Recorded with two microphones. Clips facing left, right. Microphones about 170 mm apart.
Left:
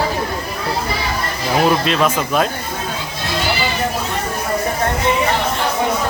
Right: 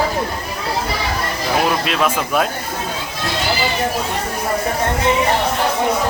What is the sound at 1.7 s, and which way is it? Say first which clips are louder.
Speech: left 2 dB; 5° right (ahead or behind).